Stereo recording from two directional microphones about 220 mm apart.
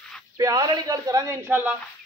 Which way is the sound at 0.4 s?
15° right (ahead or behind).